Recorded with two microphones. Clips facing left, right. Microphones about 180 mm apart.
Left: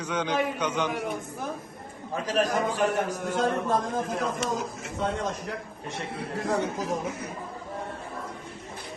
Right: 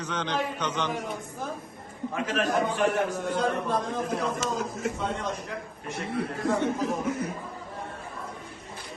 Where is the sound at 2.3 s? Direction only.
40° left (ahead or behind).